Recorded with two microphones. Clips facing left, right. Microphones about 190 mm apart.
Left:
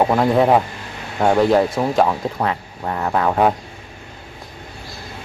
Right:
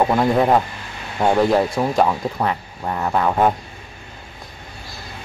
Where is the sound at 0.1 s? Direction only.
5° left (ahead or behind).